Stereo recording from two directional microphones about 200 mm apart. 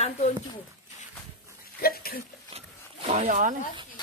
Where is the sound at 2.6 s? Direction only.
30° right (ahead or behind).